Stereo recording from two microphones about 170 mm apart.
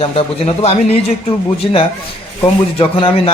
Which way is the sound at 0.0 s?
35° left (ahead or behind).